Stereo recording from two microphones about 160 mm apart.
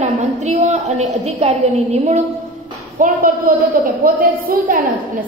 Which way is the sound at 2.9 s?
55° right (ahead or behind).